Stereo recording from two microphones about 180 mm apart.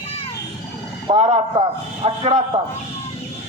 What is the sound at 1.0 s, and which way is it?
A man's voice, 40° right (ahead or behind).